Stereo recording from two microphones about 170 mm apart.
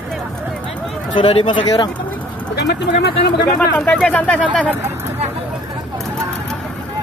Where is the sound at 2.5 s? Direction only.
85° left.